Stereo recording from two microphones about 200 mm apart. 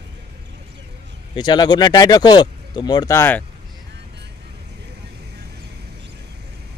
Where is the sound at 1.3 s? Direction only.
20° left (ahead or behind).